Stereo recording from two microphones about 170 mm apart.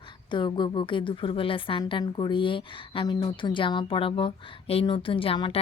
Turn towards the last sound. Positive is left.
turn(degrees=30)  # may be behind; listen again after turning